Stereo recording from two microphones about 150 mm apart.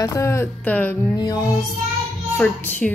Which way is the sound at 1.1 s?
25° left (ahead or behind).